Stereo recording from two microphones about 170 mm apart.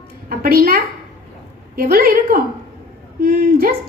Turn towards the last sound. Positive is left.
turn(degrees=-60)  # may be behind; listen again after turning